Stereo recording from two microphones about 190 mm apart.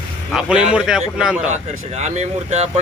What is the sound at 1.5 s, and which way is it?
Speech, 35° right (ahead or behind).